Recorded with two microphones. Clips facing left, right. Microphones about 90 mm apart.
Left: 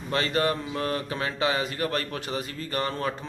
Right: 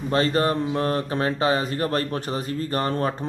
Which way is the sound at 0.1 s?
35° right (ahead or behind).